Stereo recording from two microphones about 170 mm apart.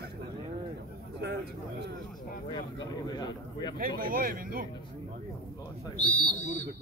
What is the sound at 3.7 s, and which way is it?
Speech, 60° right (ahead or behind).